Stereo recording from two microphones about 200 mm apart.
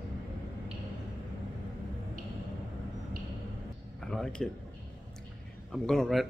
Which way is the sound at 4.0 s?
5° left (ahead or behind).